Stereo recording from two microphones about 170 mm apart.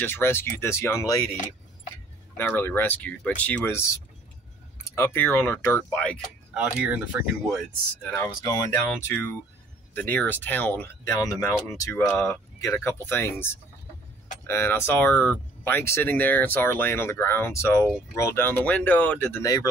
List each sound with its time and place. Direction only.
0.0 s speech: 15° left (ahead or behind)
2.3 s speech: 15° left (ahead or behind)
6.5 s speech: 10° right (ahead or behind)
8.0 s speech: 10° left (ahead or behind)
19.4 s speech: 20° left (ahead or behind)